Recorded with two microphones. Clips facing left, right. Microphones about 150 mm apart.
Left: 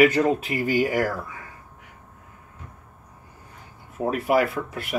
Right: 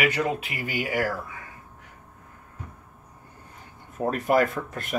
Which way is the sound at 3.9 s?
5° left (ahead or behind).